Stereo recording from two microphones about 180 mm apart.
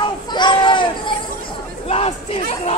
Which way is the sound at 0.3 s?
25° left (ahead or behind).